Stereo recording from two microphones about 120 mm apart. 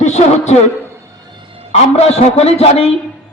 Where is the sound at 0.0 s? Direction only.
75° left (ahead or behind).